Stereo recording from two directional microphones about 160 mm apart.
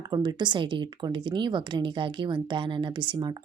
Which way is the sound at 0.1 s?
25° right (ahead or behind).